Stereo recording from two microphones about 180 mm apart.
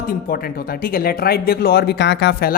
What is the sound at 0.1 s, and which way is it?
Speech, 55° left (ahead or behind).